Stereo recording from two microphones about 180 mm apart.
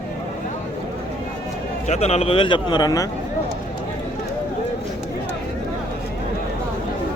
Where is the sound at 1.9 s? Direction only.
35° left (ahead or behind).